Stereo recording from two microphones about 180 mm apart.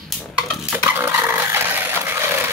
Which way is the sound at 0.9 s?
15° right (ahead or behind).